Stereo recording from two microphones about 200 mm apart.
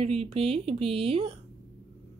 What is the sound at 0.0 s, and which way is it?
Speech, 30° right (ahead or behind).